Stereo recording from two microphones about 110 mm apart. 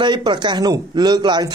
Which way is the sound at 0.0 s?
45° right (ahead or behind).